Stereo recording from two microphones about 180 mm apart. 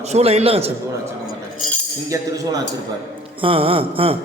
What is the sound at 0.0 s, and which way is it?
Speech, 35° right (ahead or behind).